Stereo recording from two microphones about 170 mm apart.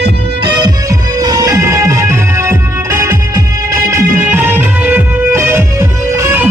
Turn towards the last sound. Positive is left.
turn(degrees=-10)  # may be behind; listen again after turning